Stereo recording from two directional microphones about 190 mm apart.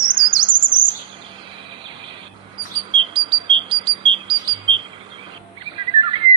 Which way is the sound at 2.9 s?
25° right (ahead or behind).